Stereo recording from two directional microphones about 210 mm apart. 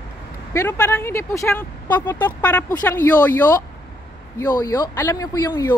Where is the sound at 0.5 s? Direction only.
15° left (ahead or behind).